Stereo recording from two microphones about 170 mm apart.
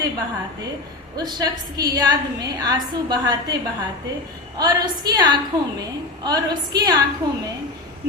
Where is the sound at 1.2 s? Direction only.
25° right (ahead or behind).